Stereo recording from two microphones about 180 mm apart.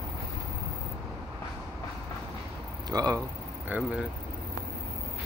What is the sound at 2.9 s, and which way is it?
Speech, 20° right (ahead or behind).